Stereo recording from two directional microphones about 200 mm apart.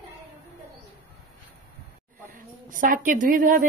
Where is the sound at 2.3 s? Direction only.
45° right (ahead or behind).